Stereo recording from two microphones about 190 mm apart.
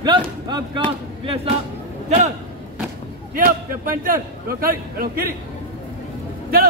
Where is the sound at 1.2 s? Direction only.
30° right (ahead or behind).